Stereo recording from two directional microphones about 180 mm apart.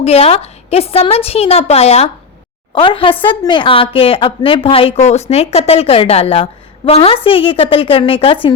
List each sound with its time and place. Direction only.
0.0 s a woman's voice: 35° left (ahead or behind)